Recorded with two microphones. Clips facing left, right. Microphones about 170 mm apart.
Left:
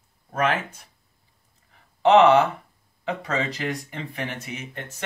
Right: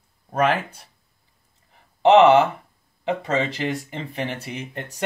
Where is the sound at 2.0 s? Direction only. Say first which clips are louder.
Right 2 dB; 25° right (ahead or behind).